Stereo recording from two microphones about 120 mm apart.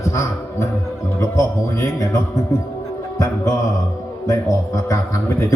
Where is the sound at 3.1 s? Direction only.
25° left (ahead or behind).